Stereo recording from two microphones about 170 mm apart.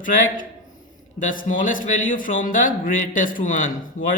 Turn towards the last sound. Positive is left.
turn(degrees=50)  # may be behind; listen again after turning